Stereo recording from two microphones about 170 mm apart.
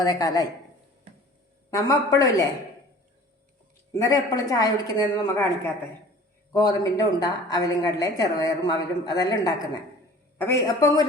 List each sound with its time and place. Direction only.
0.0 s a woman's voice: 20° left (ahead or behind)
1.7 s a woman's voice: 20° left (ahead or behind)
3.9 s a woman's voice: 20° left (ahead or behind)